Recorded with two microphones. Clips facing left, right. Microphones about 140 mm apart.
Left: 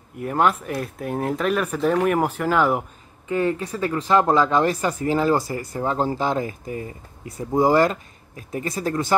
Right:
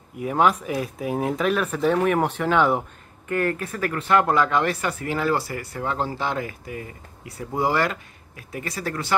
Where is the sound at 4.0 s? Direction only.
30° left (ahead or behind).